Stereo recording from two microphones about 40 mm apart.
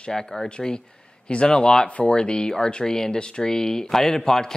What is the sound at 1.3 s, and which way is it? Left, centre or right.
Speech, left.